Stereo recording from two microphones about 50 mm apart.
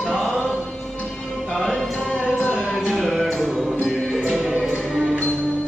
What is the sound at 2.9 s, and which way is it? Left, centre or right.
Music, centre.